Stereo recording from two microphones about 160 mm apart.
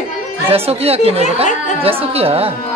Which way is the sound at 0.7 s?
40° right (ahead or behind).